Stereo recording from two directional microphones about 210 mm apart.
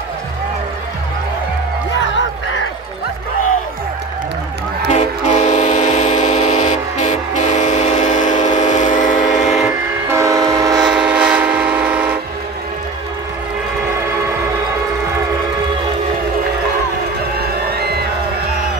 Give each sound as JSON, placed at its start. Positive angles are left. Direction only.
{"t": 4.9, "sound": "train", "side_deg": 35}
{"t": 10.0, "sound": "train", "side_deg": -15}
{"t": 10.8, "sound": "train", "side_deg": -5}
{"t": 17.4, "sound": "music", "side_deg": -50}